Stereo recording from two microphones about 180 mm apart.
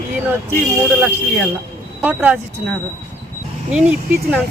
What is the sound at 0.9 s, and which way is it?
Speech, 5° right (ahead or behind).